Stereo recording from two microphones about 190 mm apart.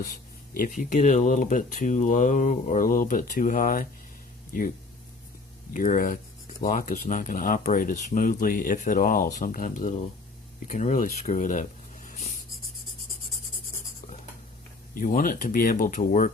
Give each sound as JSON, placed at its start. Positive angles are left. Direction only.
{"t": 0.5, "sound": "speech", "side_deg": 45}
{"t": 5.7, "sound": "speech", "side_deg": 45}
{"t": 14.9, "sound": "speech", "side_deg": 45}